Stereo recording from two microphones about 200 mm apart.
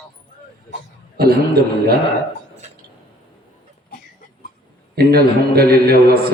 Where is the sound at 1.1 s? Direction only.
50° right (ahead or behind).